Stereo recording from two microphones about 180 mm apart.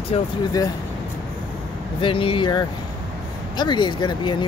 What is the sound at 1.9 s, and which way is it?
Speech, 30° left (ahead or behind).